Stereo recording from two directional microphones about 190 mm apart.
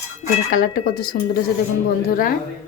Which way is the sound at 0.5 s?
50° left (ahead or behind).